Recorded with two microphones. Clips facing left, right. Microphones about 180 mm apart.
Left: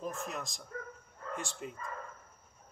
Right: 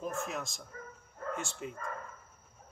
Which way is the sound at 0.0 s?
Centre (ahead or behind).